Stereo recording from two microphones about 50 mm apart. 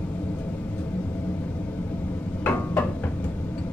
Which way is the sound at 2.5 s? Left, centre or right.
Left.